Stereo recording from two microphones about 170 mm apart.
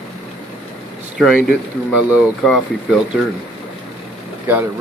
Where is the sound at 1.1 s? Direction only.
Centre (ahead or behind).